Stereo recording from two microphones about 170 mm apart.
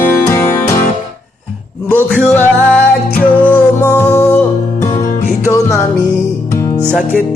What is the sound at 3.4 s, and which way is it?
Music, 10° left (ahead or behind).